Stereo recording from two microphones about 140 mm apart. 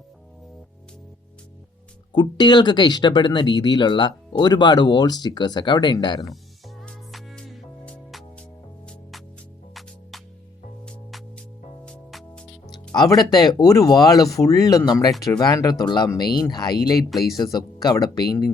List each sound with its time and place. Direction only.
2.1 s speech: 30° left (ahead or behind)
6.8 s music: 5° left (ahead or behind)
11.9 s music: 5° left (ahead or behind)
12.7 s speech: 30° left (ahead or behind)